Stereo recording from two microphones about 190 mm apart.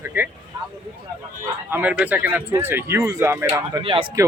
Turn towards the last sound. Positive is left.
turn(degrees=-30)  # may be behind; listen again after turning